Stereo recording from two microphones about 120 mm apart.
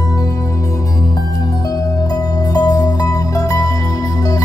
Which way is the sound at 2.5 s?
30° left (ahead or behind).